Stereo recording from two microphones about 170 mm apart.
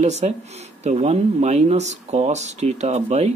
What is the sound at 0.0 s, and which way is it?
Speech, 40° right (ahead or behind).